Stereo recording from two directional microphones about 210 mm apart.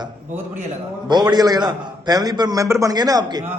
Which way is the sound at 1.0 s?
20° right (ahead or behind).